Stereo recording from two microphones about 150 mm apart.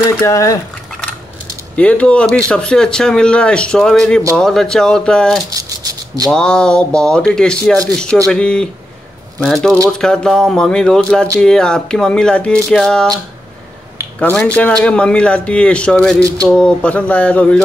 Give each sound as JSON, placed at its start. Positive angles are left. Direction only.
{"t": 0.3, "sound": "speech", "side_deg": 20}
{"t": 1.8, "sound": "speech", "side_deg": 10}
{"t": 5.5, "sound": "rattle", "side_deg": -25}
{"t": 6.3, "sound": "speech", "side_deg": 5}
{"t": 14.2, "sound": "speech", "side_deg": 10}